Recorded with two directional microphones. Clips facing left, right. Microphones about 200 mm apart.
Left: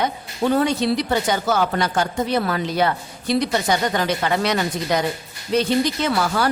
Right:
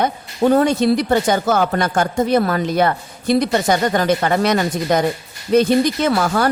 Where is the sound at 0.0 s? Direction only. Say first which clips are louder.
Right 5 dB; 45° right (ahead or behind).